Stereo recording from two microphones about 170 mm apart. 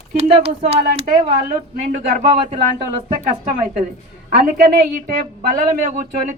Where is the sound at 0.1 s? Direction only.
40° right (ahead or behind).